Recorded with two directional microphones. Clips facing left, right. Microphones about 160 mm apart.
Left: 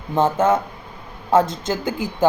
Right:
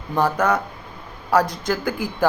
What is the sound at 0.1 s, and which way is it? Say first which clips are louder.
Speech: left 2 dB; 25° left (ahead or behind).